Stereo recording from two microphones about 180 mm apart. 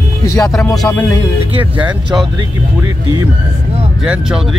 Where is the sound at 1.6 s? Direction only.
10° right (ahead or behind).